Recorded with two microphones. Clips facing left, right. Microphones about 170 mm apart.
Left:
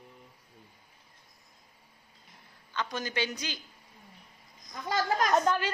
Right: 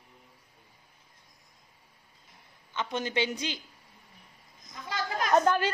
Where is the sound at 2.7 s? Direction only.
25° right (ahead or behind).